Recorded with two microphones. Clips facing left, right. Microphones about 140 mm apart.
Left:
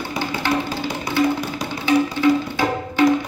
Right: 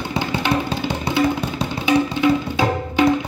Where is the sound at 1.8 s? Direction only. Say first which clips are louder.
Even; 15° right (ahead or behind).